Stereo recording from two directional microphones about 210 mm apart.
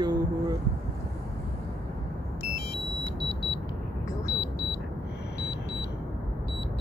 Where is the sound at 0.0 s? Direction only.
20° right (ahead or behind).